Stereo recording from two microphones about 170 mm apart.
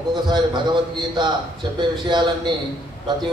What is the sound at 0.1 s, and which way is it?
A man's voice, 25° right (ahead or behind).